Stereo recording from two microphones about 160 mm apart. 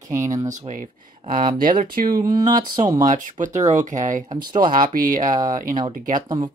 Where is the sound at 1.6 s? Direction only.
55° right (ahead or behind).